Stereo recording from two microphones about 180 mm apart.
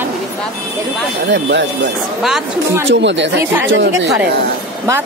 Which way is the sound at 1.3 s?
90° right.